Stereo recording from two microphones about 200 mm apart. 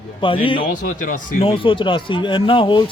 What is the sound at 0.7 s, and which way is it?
Speech, 40° left (ahead or behind).